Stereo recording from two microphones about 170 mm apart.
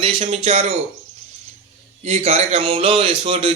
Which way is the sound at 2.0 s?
35° right (ahead or behind).